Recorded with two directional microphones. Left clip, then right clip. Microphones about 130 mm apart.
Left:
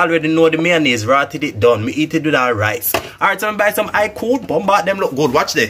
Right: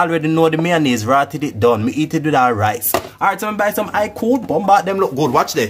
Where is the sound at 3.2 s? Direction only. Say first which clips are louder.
Left 3 dB; 40° right (ahead or behind).